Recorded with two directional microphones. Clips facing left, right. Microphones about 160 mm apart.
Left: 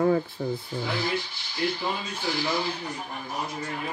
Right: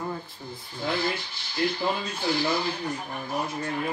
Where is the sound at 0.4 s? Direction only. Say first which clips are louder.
Left 11 dB; 90° left.